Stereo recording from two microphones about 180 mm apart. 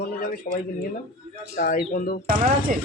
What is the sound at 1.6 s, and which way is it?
Speech, 55° left (ahead or behind).